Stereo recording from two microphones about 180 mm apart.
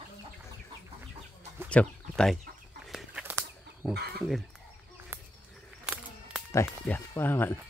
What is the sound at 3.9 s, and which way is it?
Speech, 65° right (ahead or behind).